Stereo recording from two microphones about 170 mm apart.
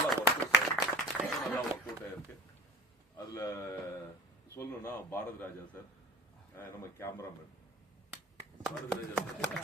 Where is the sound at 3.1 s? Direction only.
20° left (ahead or behind).